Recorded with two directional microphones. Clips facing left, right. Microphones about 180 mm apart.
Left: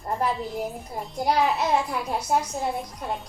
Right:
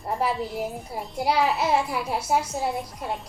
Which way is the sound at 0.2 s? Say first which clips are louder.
Right 1 dB; 5° right (ahead or behind).